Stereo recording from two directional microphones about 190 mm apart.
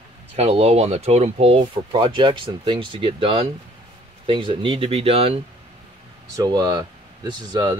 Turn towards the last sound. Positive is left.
turn(degrees=-20)  # may be behind; listen again after turning